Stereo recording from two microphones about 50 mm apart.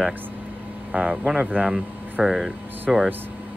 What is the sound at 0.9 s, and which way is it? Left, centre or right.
Speech, right.